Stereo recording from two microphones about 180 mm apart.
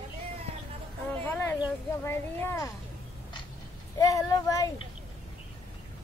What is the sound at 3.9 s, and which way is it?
Speech, 20° left (ahead or behind).